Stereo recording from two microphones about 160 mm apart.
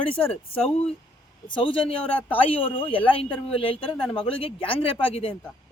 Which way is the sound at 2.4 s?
35° left (ahead or behind).